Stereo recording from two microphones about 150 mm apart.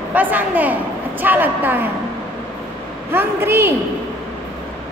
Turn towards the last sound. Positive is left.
turn(degrees=-15)  # may be behind; listen again after turning